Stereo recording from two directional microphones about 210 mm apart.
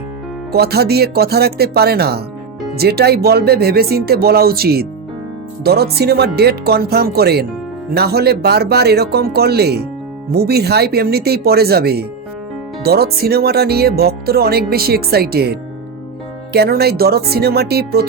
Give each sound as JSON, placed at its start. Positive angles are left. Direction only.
{"t": 0.5, "sound": "speech", "side_deg": -50}